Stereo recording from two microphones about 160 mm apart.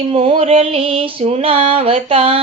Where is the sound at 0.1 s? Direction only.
40° right (ahead or behind).